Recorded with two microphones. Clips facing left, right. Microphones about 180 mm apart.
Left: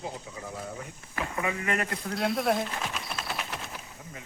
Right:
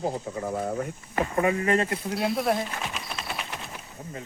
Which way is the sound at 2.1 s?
Centre (ahead or behind).